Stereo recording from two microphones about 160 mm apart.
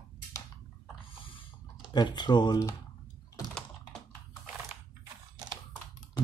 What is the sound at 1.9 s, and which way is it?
Speech, 25° left (ahead or behind).